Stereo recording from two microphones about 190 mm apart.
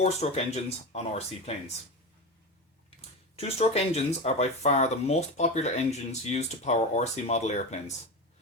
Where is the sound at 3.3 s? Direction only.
35° left (ahead or behind).